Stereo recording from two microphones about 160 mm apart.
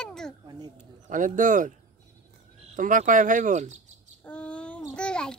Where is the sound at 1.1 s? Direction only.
55° right (ahead or behind).